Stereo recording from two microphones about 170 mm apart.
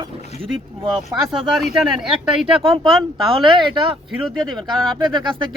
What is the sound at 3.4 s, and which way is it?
Speech, 30° right (ahead or behind).